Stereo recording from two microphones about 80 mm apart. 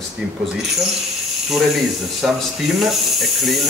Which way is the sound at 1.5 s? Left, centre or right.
Centre.